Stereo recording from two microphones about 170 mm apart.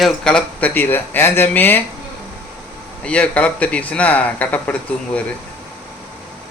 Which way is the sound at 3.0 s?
5° left (ahead or behind).